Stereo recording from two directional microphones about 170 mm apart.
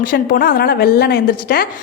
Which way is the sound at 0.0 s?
55° left (ahead or behind).